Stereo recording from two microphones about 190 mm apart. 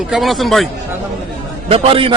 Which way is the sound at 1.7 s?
30° right (ahead or behind).